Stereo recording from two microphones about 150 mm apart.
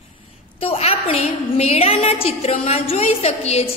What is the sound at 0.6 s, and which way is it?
A woman's voice, 40° left (ahead or behind).